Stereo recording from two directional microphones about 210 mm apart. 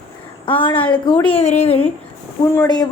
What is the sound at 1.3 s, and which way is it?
Speech, 30° left (ahead or behind).